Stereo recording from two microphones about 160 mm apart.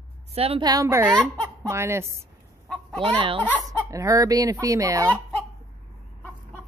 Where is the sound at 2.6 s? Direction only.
5° left (ahead or behind).